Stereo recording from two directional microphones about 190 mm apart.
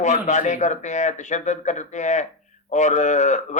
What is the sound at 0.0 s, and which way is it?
A man's voice, 40° left (ahead or behind).